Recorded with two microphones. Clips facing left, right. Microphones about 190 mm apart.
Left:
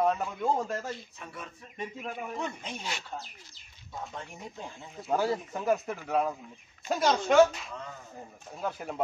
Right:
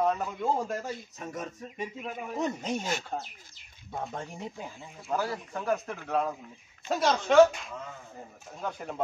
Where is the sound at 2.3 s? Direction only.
40° right (ahead or behind).